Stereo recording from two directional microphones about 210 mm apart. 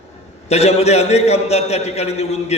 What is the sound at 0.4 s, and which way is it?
A man's voice, 30° left (ahead or behind).